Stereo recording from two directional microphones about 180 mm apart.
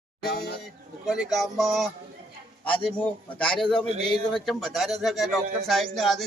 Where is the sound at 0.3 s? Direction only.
65° left (ahead or behind).